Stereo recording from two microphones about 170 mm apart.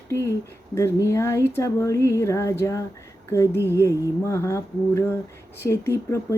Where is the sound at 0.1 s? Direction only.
15° left (ahead or behind).